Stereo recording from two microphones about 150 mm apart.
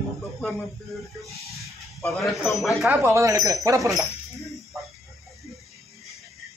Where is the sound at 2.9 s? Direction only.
15° right (ahead or behind).